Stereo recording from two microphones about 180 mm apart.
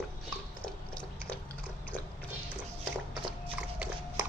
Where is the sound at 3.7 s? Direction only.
5° right (ahead or behind).